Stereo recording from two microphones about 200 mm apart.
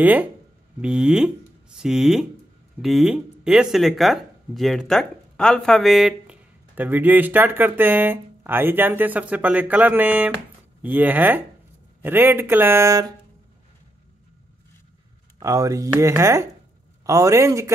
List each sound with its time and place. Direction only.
0.0 s speech: 10° right (ahead or behind)
15.3 s speech: 15° right (ahead or behind)